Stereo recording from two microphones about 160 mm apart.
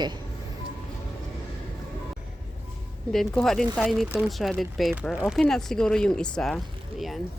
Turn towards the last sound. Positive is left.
turn(degrees=0)  # may be behind; listen again after turning